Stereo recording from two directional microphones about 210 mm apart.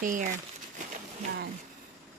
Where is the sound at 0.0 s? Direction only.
40° right (ahead or behind).